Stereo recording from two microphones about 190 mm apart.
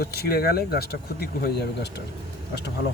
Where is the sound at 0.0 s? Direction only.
55° left (ahead or behind).